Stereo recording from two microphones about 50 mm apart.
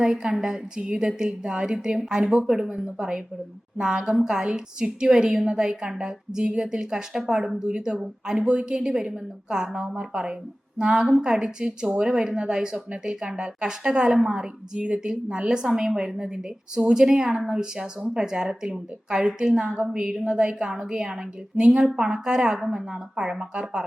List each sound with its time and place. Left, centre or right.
0.0 s a woman's voice: centre
8.9 s a woman's voice: centre